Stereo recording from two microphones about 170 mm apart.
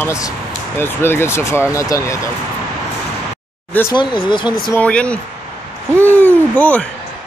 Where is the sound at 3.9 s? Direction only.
25° left (ahead or behind).